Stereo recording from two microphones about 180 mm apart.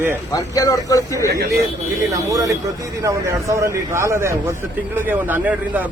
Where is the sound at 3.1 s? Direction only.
15° right (ahead or behind).